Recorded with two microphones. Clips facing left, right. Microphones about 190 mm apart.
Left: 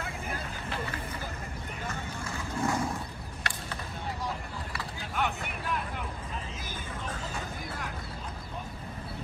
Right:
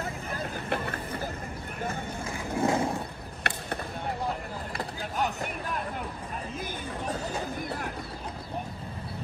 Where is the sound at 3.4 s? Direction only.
60° right (ahead or behind).